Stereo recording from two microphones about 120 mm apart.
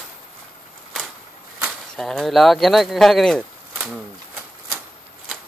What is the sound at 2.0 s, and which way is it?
Speech, 5° left (ahead or behind).